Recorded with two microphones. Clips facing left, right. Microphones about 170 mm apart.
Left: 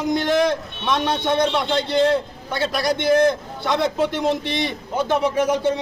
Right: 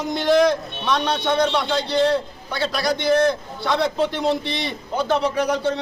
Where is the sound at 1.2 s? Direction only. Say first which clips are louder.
Even; 20° left (ahead or behind).